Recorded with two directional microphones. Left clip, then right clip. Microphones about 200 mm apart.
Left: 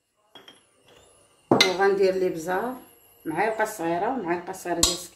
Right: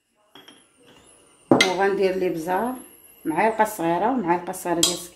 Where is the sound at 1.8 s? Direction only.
20° right (ahead or behind); by 4.7 s 40° right (ahead or behind).